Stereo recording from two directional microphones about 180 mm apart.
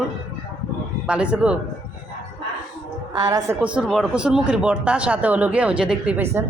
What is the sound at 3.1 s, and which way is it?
Speech, 20° right (ahead or behind).